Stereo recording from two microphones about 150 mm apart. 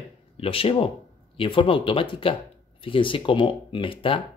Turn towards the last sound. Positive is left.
turn(degrees=35)  # may be behind; listen again after turning